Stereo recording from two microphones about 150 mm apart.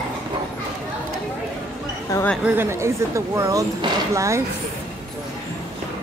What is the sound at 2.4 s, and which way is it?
Speech, 15° right (ahead or behind).